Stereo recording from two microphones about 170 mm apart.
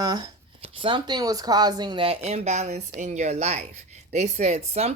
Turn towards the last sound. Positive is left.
turn(degrees=-40)  # may be behind; listen again after turning